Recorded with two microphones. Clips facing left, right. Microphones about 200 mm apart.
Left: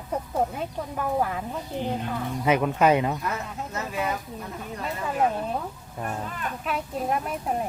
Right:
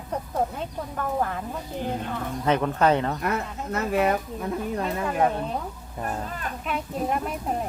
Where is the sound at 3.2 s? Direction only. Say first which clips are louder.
Right 4 dB; 60° right (ahead or behind).